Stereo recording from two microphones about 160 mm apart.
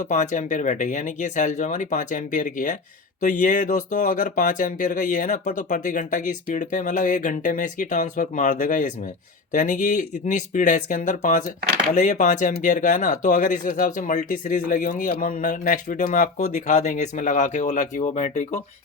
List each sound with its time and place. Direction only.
0.1 s speech: 50° left (ahead or behind)